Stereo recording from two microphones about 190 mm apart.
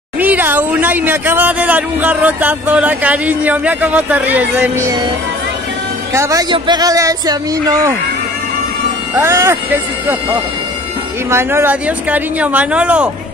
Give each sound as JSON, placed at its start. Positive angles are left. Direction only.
{"t": 0.2, "sound": "speech", "side_deg": -10}
{"t": 6.1, "sound": "speech", "side_deg": -15}
{"t": 9.1, "sound": "speech", "side_deg": -15}
{"t": 11.2, "sound": "speech", "side_deg": -15}